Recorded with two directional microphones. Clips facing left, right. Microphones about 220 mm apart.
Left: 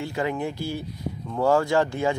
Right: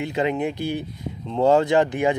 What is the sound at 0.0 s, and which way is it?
Speech, 20° right (ahead or behind).